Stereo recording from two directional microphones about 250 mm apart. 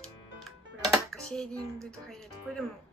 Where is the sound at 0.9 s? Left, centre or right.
Centre.